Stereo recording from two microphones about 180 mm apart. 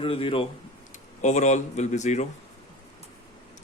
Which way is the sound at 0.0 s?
30° left (ahead or behind).